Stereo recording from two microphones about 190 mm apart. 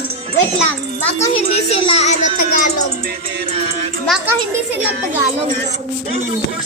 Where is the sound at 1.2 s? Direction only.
30° left (ahead or behind).